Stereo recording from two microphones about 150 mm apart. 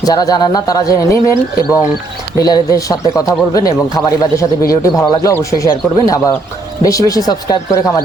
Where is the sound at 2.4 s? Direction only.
25° left (ahead or behind).